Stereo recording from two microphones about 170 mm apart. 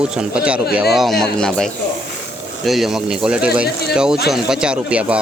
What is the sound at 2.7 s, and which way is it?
Speech, centre (ahead or behind).